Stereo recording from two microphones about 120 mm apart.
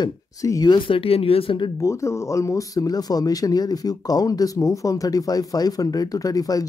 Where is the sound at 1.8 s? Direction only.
25° left (ahead or behind).